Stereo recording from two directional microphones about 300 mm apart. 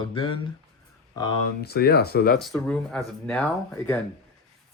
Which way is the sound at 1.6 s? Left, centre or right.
Left.